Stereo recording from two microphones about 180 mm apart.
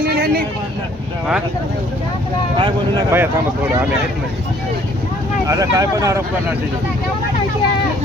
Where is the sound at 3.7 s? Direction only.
10° right (ahead or behind).